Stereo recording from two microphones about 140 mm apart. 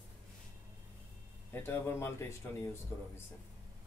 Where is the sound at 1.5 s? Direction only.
15° left (ahead or behind).